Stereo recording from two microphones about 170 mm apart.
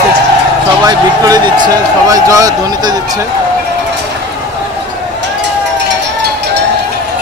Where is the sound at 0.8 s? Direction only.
25° right (ahead or behind).